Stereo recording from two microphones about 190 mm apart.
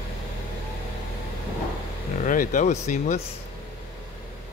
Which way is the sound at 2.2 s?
40° left (ahead or behind).